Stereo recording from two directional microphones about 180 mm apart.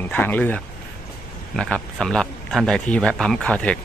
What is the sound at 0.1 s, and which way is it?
Speech, 10° left (ahead or behind).